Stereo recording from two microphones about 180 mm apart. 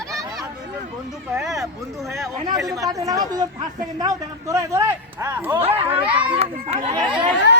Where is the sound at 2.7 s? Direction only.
20° right (ahead or behind).